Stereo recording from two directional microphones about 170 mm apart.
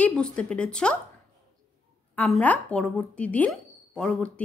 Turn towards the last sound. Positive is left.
turn(degrees=5)  # may be behind; listen again after turning